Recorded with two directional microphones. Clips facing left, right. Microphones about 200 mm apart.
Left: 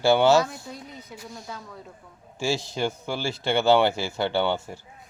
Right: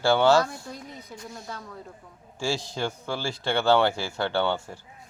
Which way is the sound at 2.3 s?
20° left (ahead or behind).